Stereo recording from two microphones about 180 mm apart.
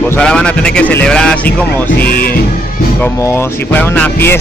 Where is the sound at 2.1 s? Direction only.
55° left (ahead or behind).